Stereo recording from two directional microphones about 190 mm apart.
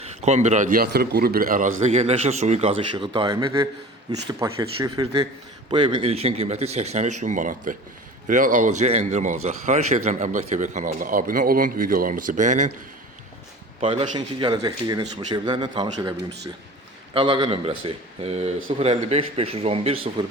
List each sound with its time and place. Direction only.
0.0 s a man's voice: 35° right (ahead or behind)
1.8 s a man's voice: 35° right (ahead or behind)
14.2 s speech: 20° right (ahead or behind)
17.2 s a man's voice: 25° right (ahead or behind)